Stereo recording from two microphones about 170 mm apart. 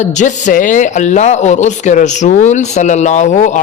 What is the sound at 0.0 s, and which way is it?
A man's voice, 45° left (ahead or behind).